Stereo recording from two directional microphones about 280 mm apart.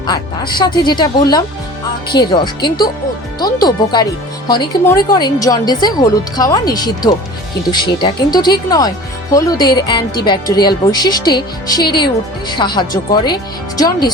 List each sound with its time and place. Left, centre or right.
0.0 s speech: centre